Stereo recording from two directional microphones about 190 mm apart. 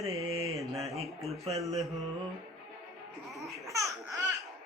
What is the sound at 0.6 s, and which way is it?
Music, centre (ahead or behind).